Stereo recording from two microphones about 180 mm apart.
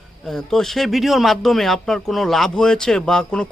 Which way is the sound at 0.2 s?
Centre (ahead or behind).